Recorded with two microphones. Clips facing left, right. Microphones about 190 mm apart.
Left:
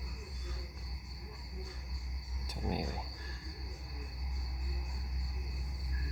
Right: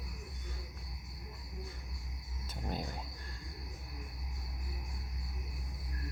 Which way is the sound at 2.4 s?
15° left (ahead or behind).